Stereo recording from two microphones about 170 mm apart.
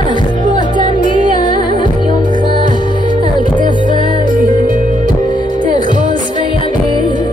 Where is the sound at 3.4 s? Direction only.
25° left (ahead or behind).